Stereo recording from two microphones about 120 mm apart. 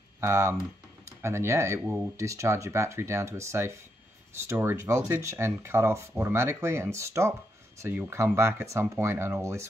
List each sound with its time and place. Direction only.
0.2 s speech: 20° right (ahead or behind)